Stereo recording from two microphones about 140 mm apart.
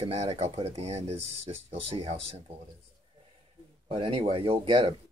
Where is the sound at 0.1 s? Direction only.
50° right (ahead or behind).